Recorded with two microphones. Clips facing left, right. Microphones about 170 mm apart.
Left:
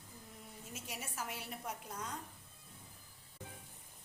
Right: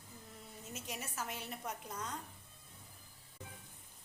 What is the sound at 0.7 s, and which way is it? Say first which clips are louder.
A woman's voice: right 2 dB; 10° left (ahead or behind).